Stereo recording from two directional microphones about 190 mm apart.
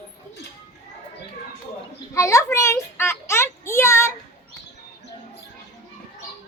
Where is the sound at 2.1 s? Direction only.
15° left (ahead or behind).